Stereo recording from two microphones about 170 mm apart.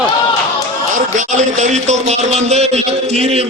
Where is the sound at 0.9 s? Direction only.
45° right (ahead or behind).